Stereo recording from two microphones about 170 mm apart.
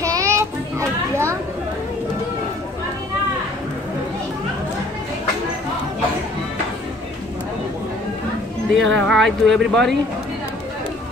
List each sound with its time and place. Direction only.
0.0 s children playing: 20° right (ahead or behind)
8.7 s speech: 5° left (ahead or behind)